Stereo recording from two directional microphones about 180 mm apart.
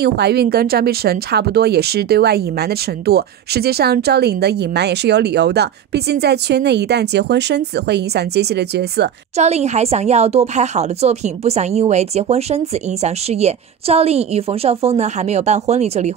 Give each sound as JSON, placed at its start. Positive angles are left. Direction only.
{"t": 0.0, "sound": "speech", "side_deg": -65}
{"t": 9.4, "sound": "a woman's voice", "side_deg": -35}